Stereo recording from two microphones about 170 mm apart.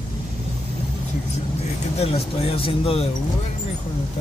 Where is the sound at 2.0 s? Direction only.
35° left (ahead or behind).